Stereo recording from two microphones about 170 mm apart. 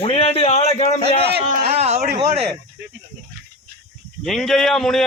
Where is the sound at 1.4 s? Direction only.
55° right (ahead or behind).